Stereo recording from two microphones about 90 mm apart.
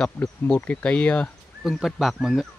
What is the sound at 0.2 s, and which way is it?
Speech, 25° left (ahead or behind).